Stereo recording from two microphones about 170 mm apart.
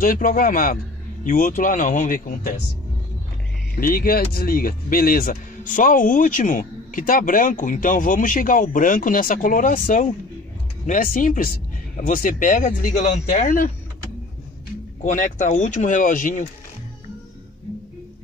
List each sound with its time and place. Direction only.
0.0 s a man's voice: 55° left (ahead or behind)
3.7 s speech: 60° left (ahead or behind)
15.0 s speech: 50° left (ahead or behind)